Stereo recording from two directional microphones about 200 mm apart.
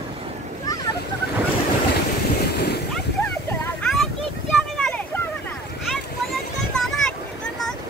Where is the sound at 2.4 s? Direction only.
55° left (ahead or behind).